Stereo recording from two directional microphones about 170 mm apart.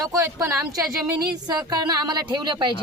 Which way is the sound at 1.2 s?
25° right (ahead or behind).